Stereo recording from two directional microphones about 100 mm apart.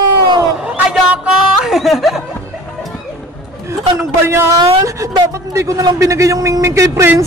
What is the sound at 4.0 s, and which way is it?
Speech, 25° right (ahead or behind).